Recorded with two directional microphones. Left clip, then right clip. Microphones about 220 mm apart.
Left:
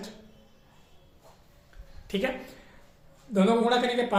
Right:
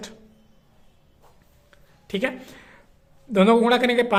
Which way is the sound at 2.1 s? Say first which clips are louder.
Right 4 dB; 35° right (ahead or behind).